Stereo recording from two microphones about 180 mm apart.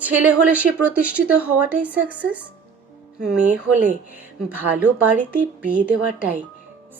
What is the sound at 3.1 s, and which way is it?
A woman's voice, 5° right (ahead or behind).